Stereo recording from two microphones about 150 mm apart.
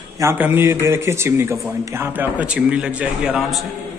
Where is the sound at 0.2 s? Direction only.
15° right (ahead or behind).